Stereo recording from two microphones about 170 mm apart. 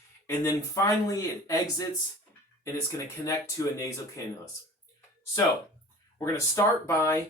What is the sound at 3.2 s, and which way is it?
Speech, 20° left (ahead or behind).